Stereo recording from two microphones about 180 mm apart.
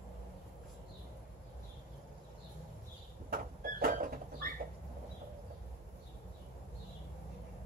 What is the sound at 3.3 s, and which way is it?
Sliding door, 55° right (ahead or behind).